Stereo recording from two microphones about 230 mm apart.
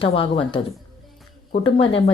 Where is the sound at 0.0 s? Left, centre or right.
Left.